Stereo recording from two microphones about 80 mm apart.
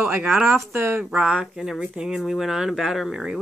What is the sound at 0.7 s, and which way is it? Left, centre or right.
Speech, right.